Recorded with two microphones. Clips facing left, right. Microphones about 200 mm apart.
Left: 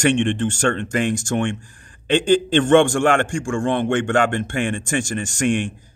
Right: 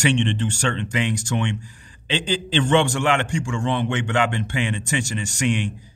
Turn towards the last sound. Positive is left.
turn(degrees=50)  # may be behind; listen again after turning